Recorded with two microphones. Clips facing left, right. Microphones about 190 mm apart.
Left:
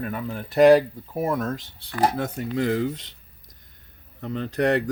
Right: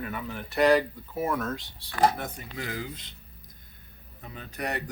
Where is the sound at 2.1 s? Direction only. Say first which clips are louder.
Left 9 dB; 85° left.